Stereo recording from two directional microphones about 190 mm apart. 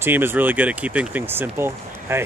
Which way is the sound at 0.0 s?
10° right (ahead or behind).